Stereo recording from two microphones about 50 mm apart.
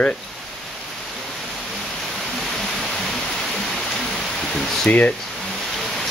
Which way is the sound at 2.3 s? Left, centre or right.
Centre.